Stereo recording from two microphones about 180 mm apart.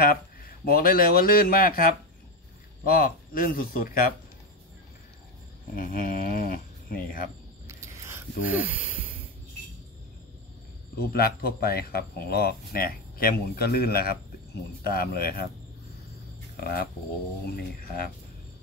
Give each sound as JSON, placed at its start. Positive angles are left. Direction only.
{"t": 0.0, "sound": "speech", "side_deg": 55}
{"t": 5.8, "sound": "a sound", "side_deg": 50}
{"t": 6.9, "sound": "speech", "side_deg": 50}
{"t": 7.6, "sound": "a sound", "side_deg": -15}
{"t": 11.1, "sound": "speech", "side_deg": 55}
{"t": 16.5, "sound": "speech", "side_deg": 55}